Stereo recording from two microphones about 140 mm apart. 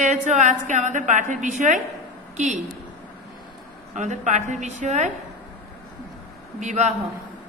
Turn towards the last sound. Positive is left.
turn(degrees=-55)  # may be behind; listen again after turning